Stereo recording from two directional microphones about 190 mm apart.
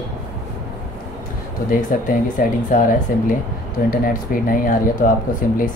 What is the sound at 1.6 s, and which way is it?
Speech, 45° left (ahead or behind).